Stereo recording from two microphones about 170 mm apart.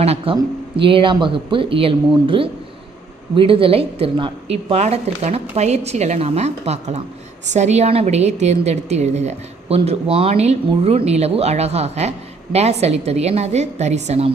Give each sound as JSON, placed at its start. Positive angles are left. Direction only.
{"t": 0.0, "sound": "a woman's voice", "side_deg": -35}